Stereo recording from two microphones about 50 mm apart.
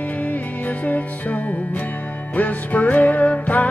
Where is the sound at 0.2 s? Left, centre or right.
Left.